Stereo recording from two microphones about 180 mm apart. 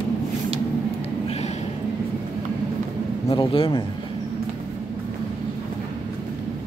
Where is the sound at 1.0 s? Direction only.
35° left (ahead or behind).